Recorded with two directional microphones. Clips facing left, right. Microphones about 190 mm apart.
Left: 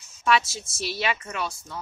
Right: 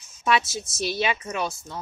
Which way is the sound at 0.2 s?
20° right (ahead or behind).